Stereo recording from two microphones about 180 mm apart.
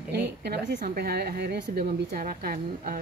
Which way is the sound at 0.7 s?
55° right (ahead or behind).